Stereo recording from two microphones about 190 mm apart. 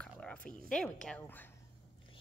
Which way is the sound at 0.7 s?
5° left (ahead or behind).